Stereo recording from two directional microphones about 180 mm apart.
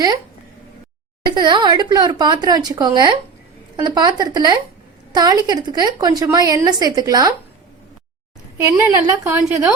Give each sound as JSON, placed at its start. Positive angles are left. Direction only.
{"t": 1.2, "sound": "a woman's voice", "side_deg": -25}
{"t": 8.5, "sound": "a woman's voice", "side_deg": -15}